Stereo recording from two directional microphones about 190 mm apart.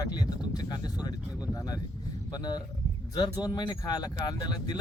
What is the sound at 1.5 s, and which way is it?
Speech, 20° left (ahead or behind).